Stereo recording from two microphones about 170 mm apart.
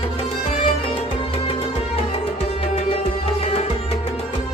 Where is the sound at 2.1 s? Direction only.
35° left (ahead or behind).